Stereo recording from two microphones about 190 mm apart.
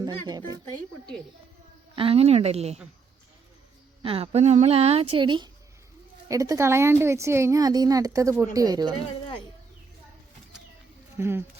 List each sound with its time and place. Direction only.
0.0 s speech: 20° right (ahead or behind)
0.6 s speech: 5° left (ahead or behind)
2.0 s a woman's voice: 30° right (ahead or behind)
4.0 s a woman's voice: 30° right (ahead or behind)
11.2 s a woman's voice: 10° right (ahead or behind)